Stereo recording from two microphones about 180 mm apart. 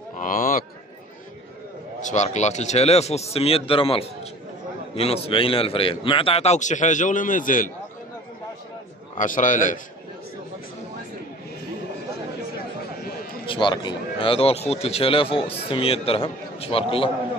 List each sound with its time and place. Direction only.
0.2 s a sound: 50° left (ahead or behind)
2.0 s speech: 40° left (ahead or behind)
9.1 s a man's voice: 45° left (ahead or behind)
13.5 s speech: 25° left (ahead or behind)